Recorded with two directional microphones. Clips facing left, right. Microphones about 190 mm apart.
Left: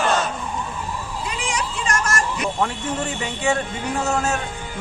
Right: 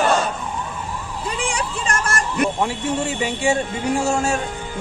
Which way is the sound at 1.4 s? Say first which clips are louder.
Even; 30° right (ahead or behind).